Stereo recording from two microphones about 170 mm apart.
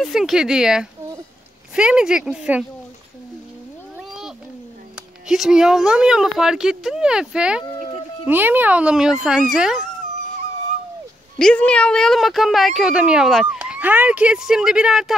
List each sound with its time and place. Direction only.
0.0 s speech: centre (ahead or behind)
4.9 s a child's voice: 5° right (ahead or behind)
11.3 s speech: 5° left (ahead or behind)